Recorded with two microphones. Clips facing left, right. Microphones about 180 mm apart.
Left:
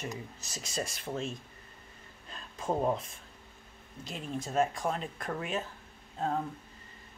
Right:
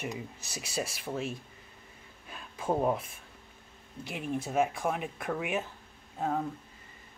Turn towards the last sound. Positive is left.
turn(degrees=-10)  # may be behind; listen again after turning